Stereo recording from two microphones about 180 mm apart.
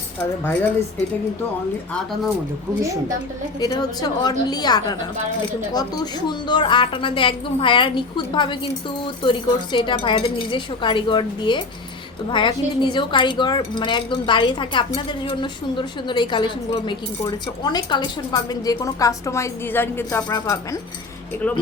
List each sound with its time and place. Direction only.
3.6 s a woman's voice: 20° left (ahead or behind)
21.4 s speech: 5° left (ahead or behind)